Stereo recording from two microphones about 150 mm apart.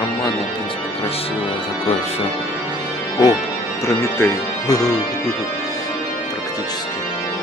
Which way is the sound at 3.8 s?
20° left (ahead or behind).